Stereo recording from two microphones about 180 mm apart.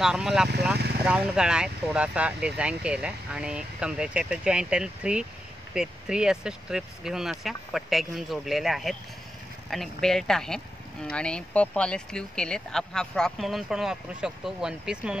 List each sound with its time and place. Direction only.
0.0 s speech: 5° right (ahead or behind)
0.7 s speech: 65° right (ahead or behind)
1.0 s speech: 5° right (ahead or behind)